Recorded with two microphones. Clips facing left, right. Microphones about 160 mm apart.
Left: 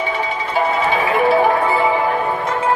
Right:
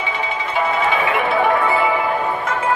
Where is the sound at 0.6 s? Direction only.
40° left (ahead or behind).